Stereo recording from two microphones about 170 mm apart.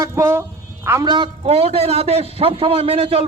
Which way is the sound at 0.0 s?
15° right (ahead or behind).